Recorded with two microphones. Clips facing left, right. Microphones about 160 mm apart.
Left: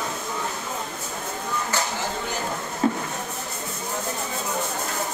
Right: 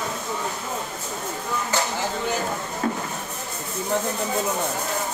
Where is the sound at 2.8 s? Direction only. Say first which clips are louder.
Left 4 dB; 20° left (ahead or behind).